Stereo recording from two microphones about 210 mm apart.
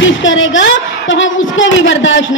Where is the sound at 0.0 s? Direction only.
65° left (ahead or behind).